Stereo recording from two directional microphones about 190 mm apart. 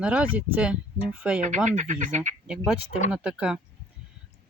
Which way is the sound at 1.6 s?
40° right (ahead or behind).